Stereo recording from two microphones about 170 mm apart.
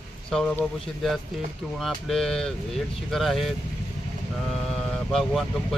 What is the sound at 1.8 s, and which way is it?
Speech, centre (ahead or behind).